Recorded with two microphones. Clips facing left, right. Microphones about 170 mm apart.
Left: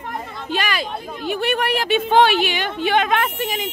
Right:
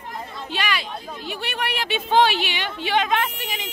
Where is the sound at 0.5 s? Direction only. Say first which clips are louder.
Left 4 dB; 45° left (ahead or behind).